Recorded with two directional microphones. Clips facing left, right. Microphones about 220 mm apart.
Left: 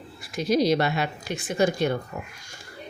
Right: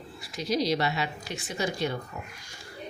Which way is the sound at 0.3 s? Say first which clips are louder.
Left 6 dB; 50° left (ahead or behind).